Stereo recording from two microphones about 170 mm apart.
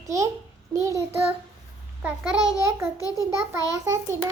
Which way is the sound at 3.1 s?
15° right (ahead or behind).